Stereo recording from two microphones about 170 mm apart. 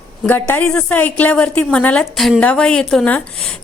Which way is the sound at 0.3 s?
10° left (ahead or behind).